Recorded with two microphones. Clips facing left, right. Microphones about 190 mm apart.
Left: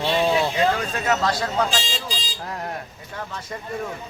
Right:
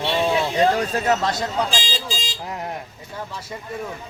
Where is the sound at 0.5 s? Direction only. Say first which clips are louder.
Right 3 dB; 35° right (ahead or behind).